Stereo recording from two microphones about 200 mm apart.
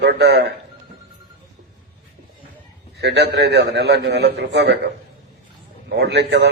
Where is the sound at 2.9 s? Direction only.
55° right (ahead or behind).